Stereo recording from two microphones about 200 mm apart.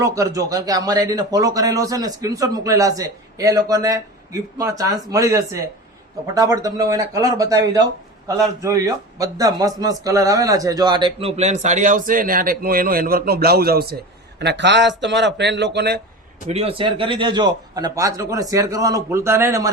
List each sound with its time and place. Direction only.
0.0 s a man's voice: 15° right (ahead or behind); by 16.0 s 55° right (ahead or behind)
16.5 s a man's voice: 30° right (ahead or behind)